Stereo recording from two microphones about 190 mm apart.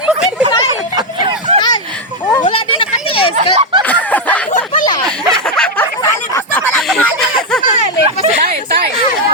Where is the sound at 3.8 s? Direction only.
10° left (ahead or behind).